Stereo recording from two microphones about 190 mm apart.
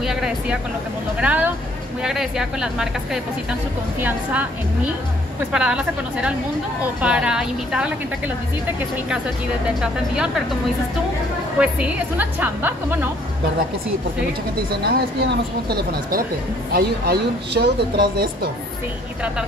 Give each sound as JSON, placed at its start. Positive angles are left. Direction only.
{"t": 0.0, "sound": "a woman's voice", "side_deg": -5}
{"t": 9.8, "sound": "a woman's voice", "side_deg": -5}
{"t": 11.6, "sound": "a woman's voice", "side_deg": -10}
{"t": 14.7, "sound": "speech", "side_deg": -55}